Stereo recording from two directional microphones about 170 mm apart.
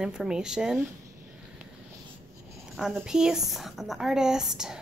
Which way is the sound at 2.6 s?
5° right (ahead or behind).